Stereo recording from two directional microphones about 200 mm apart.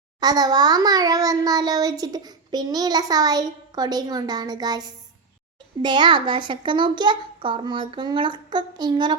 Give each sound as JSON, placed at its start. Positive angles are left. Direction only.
{"t": 0.2, "sound": "a child's voice", "side_deg": -20}